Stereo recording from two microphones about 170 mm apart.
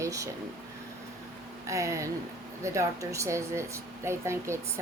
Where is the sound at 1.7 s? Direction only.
20° right (ahead or behind).